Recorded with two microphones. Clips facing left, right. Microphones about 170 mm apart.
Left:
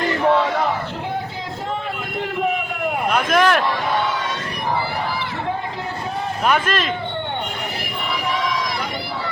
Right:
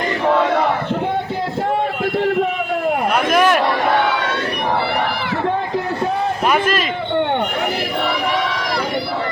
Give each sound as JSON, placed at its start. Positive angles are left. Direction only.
{"t": 3.2, "sound": "a sound", "side_deg": -10}
{"t": 3.8, "sound": "crowd", "side_deg": -70}
{"t": 6.5, "sound": "speech", "side_deg": -5}